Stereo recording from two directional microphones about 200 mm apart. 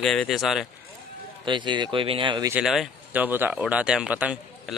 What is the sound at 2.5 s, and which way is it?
Speech, centre (ahead or behind).